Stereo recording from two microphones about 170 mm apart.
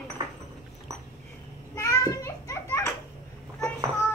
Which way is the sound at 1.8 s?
20° left (ahead or behind).